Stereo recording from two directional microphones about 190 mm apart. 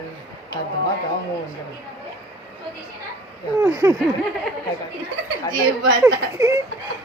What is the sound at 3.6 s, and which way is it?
Speech, 15° right (ahead or behind).